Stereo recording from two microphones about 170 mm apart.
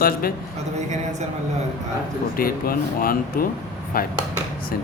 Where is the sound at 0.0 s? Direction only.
60° left (ahead or behind).